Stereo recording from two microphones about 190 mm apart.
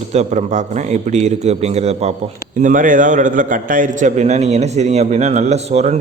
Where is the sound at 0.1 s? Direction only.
35° right (ahead or behind).